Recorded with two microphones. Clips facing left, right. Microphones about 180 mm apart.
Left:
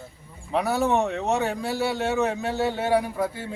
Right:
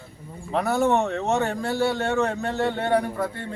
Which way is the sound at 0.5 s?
Centre (ahead or behind).